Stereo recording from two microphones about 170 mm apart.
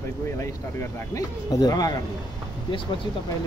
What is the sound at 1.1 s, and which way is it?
Speech, 20° left (ahead or behind).